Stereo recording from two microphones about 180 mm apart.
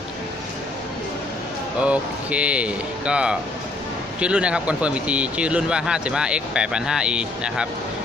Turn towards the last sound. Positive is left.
turn(degrees=-5)  # may be behind; listen again after turning